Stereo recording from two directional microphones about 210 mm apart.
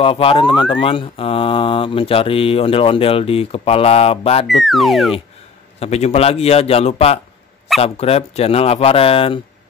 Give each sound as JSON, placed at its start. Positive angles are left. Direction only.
{"t": 0.0, "sound": "speech", "side_deg": 25}
{"t": 4.5, "sound": "speech", "side_deg": 0}
{"t": 5.8, "sound": "speech", "side_deg": 30}